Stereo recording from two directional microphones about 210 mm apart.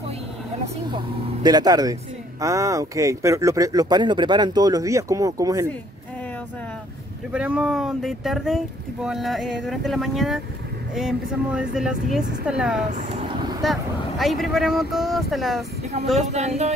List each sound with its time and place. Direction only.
0.8 s speech: 20° right (ahead or behind)
7.3 s speech: 5° right (ahead or behind)
16.2 s speech: 30° right (ahead or behind)